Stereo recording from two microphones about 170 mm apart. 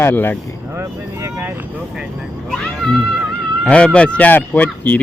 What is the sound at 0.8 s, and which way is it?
Speech, 15° right (ahead or behind).